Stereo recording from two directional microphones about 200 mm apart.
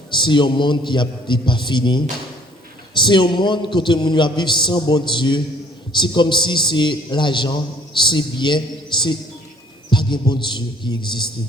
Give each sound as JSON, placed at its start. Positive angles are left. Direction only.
{"t": 0.1, "sound": "a man's voice", "side_deg": 25}